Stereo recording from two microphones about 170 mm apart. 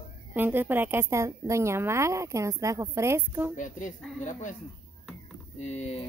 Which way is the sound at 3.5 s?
50° left (ahead or behind).